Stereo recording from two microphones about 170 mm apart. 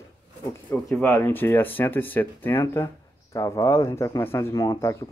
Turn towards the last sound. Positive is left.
turn(degrees=20)  # may be behind; listen again after turning